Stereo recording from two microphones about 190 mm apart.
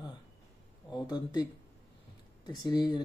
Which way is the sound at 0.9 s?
20° left (ahead or behind).